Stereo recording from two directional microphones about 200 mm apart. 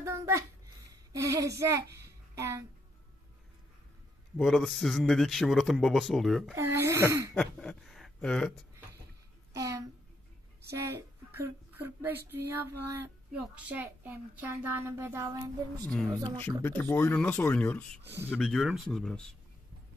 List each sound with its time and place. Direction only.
0.0 s a sound: 15° right (ahead or behind)
1.2 s a child's voice: 15° right (ahead or behind)
4.4 s a man's voice: centre (ahead or behind)
6.5 s a child's voice: 15° right (ahead or behind)
7.3 s a sound: 5° left (ahead or behind)
9.5 s a sound: 15° right (ahead or behind)
10.7 s a woman's voice: 10° right (ahead or behind)
15.9 s a man's voice: 5° left (ahead or behind)
18.0 s a child's voice: 10° right (ahead or behind)
18.3 s a man's voice: centre (ahead or behind)